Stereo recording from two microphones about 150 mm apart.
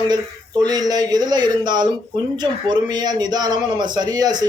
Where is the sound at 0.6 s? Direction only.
25° right (ahead or behind).